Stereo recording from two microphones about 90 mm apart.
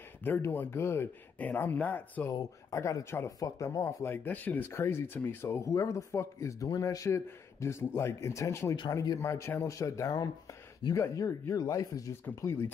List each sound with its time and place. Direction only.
0.2 s speech: 25° left (ahead or behind)
2.7 s speech: 35° left (ahead or behind)
9.2 s speech: 30° left (ahead or behind)
12.4 s speech: 25° left (ahead or behind)